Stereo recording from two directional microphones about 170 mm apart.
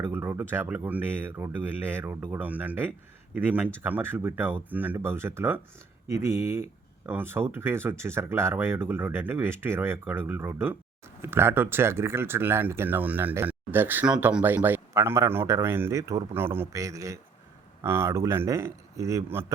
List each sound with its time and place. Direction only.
0.0 s speech: 15° right (ahead or behind)